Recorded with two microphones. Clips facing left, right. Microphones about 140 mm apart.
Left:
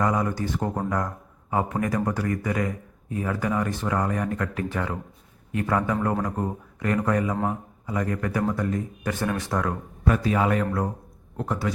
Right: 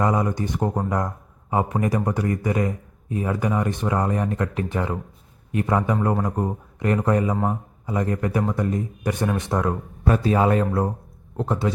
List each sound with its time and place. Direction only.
0.0 s a man's voice: 20° right (ahead or behind)